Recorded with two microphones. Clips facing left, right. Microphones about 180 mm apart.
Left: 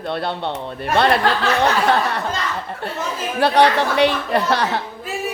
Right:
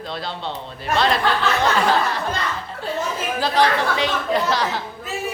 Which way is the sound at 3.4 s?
65° left (ahead or behind).